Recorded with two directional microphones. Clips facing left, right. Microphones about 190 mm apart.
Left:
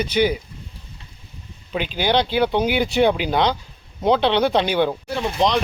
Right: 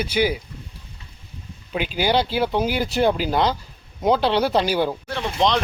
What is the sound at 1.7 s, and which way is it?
Speech, 5° right (ahead or behind).